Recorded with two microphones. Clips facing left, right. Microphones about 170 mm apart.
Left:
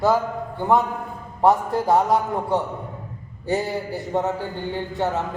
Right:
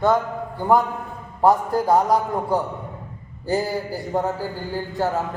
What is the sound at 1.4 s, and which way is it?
Speech, centre (ahead or behind).